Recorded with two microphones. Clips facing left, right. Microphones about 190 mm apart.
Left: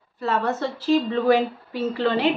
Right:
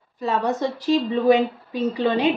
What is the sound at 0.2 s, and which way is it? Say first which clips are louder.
A woman's voice: right 1 dB; 15° right (ahead or behind).